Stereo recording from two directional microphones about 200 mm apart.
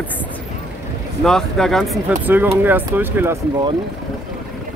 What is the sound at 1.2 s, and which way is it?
Speech, centre (ahead or behind).